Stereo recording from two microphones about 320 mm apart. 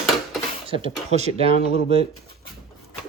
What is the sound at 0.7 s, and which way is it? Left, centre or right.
Speech, centre.